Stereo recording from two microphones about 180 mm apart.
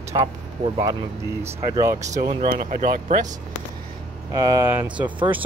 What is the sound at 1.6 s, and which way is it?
Speech, 20° right (ahead or behind).